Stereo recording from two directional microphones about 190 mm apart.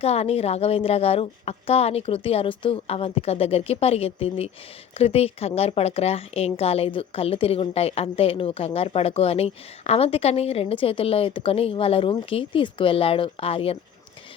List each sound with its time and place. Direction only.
0.0 s speech: 35° left (ahead or behind)